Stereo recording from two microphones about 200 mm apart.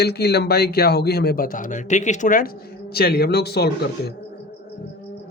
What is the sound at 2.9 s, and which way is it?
Speech, 50° left (ahead or behind).